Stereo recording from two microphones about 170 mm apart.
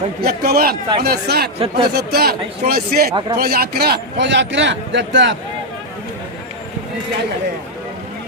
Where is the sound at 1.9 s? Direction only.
70° right (ahead or behind); by 5.3 s 90° right.